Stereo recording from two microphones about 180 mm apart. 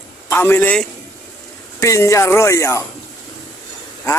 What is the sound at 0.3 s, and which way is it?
Speech, 10° left (ahead or behind).